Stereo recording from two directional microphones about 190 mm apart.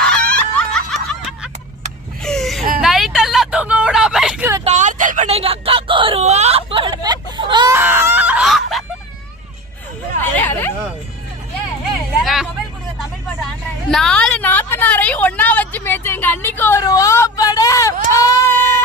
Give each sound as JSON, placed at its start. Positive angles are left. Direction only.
{"t": 0.0, "sound": "snicker", "side_deg": 5}
{"t": 2.2, "sound": "whimper", "side_deg": 0}
{"t": 2.8, "sound": "vehicle", "side_deg": 0}
{"t": 4.6, "sound": "a sound", "side_deg": -40}
{"t": 7.8, "sound": "screaming", "side_deg": -10}
{"t": 10.2, "sound": "hubbub", "side_deg": 10}
{"t": 12.2, "sound": "vehicle", "side_deg": 0}
{"t": 18.1, "sound": "a sound", "side_deg": 15}